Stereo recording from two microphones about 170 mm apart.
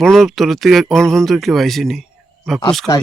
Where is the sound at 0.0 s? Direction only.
Centre (ahead or behind).